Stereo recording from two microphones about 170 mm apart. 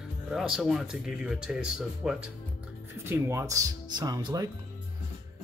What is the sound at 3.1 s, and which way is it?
Speech, 15° right (ahead or behind).